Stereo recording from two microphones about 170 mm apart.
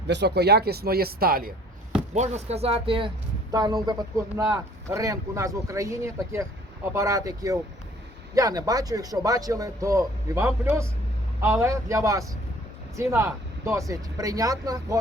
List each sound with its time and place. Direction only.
0.1 s speech: 80° right; by 1.5 s 60° right (ahead or behind)
2.1 s a man's voice: 40° right (ahead or behind); by 14.9 s 20° right (ahead or behind)